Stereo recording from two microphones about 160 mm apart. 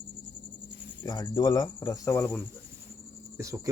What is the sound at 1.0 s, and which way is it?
Speech, 25° left (ahead or behind).